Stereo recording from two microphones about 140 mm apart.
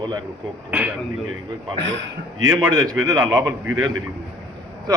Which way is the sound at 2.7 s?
30° right (ahead or behind).